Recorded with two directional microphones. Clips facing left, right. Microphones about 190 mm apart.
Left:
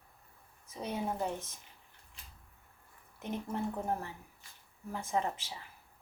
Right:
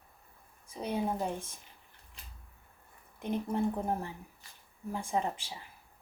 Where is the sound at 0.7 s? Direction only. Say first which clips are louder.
Right 3 dB; 10° right (ahead or behind).